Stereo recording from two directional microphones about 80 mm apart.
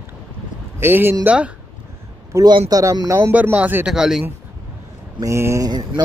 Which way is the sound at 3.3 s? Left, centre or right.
Centre.